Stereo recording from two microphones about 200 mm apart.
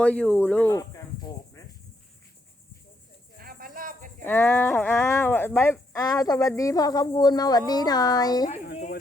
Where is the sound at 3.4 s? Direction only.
45° right (ahead or behind).